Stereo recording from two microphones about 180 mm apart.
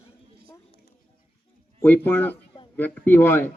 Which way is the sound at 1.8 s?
10° left (ahead or behind).